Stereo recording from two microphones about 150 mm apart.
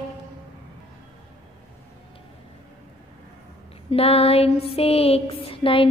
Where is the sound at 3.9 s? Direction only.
40° left (ahead or behind).